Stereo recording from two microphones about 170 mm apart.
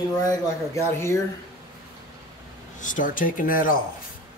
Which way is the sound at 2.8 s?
50° left (ahead or behind).